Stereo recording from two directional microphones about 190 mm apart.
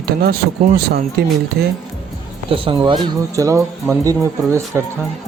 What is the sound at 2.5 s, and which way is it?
Speech, 25° right (ahead or behind).